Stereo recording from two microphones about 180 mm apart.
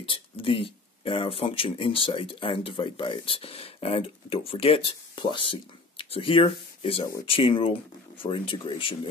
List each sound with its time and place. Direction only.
0.0 s speech: 30° left (ahead or behind)